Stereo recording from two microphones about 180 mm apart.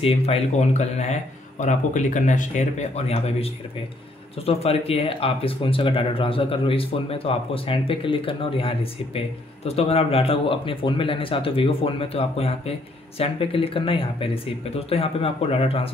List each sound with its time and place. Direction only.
0.0 s speech: 35° left (ahead or behind)